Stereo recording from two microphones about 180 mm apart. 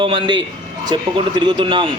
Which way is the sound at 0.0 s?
25° right (ahead or behind).